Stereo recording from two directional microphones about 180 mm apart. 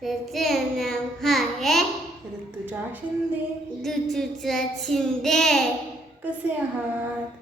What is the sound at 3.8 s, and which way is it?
Child singing, centre (ahead or behind).